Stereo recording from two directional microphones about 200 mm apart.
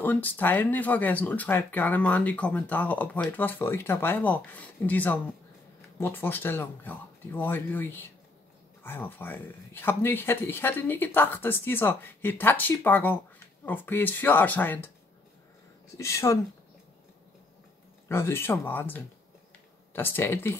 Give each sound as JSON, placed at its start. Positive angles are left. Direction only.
{"t": 0.0, "sound": "speech", "side_deg": 10}
{"t": 16.0, "sound": "speech", "side_deg": 15}
{"t": 18.0, "sound": "speech", "side_deg": 10}